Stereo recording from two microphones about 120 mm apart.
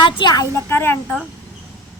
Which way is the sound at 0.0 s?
40° left (ahead or behind).